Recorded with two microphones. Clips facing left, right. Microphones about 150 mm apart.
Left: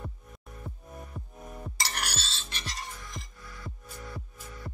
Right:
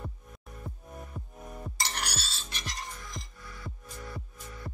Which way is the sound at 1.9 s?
15° right (ahead or behind).